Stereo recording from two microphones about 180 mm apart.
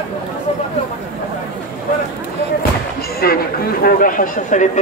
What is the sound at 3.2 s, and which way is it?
Speech, 55° left (ahead or behind).